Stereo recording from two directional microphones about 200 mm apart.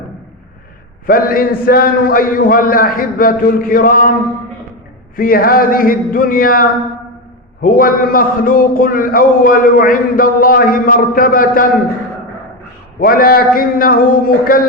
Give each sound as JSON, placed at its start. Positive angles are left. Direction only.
{"t": 1.0, "sound": "a man's voice", "side_deg": 45}
{"t": 5.1, "sound": "a man's voice", "side_deg": 45}
{"t": 13.0, "sound": "a man's voice", "side_deg": 45}